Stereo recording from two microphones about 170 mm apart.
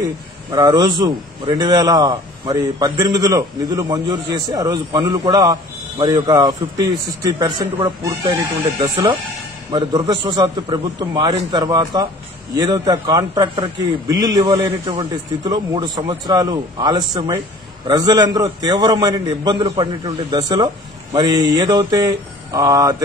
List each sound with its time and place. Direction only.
0.5 s a man's voice: 25° right (ahead or behind)